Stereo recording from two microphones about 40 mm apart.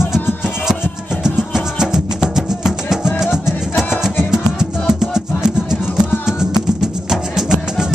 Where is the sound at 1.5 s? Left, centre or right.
Centre.